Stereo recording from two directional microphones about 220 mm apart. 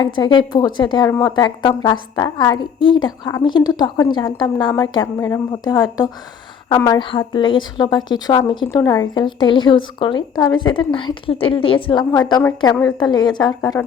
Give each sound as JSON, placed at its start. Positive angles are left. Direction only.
{"t": 0.0, "sound": "a woman's voice", "side_deg": 20}